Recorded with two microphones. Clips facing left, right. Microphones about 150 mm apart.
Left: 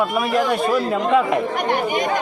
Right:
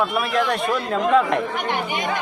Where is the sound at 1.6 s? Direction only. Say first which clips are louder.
Left 5 dB; 45° left (ahead or behind).